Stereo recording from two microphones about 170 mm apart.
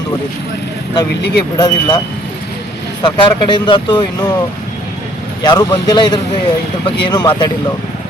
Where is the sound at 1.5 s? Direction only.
20° left (ahead or behind).